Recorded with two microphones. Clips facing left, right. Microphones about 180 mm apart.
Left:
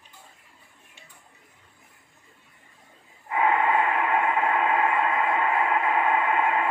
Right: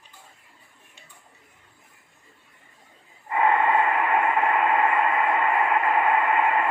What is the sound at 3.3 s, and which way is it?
Radio, centre (ahead or behind).